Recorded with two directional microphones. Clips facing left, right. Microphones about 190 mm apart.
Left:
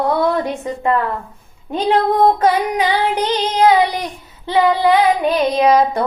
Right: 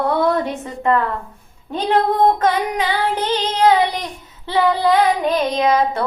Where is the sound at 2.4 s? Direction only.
10° left (ahead or behind).